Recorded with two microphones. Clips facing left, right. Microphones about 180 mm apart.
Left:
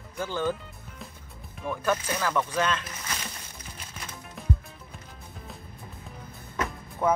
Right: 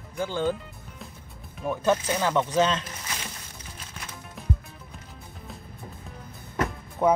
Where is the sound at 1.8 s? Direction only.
20° right (ahead or behind).